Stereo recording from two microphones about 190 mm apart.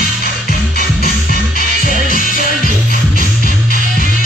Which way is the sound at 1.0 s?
50° left (ahead or behind).